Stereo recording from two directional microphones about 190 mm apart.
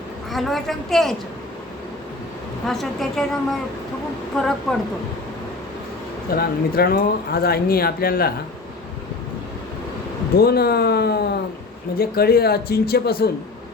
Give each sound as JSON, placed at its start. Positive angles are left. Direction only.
{"t": 0.3, "sound": "a woman's voice", "side_deg": 0}
{"t": 2.6, "sound": "a woman's voice", "side_deg": 0}
{"t": 4.4, "sound": "a woman's voice", "side_deg": 5}
{"t": 6.3, "sound": "speech", "side_deg": 55}
{"t": 10.3, "sound": "speech", "side_deg": 55}